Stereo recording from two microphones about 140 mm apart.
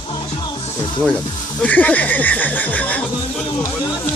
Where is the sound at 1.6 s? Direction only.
10° left (ahead or behind).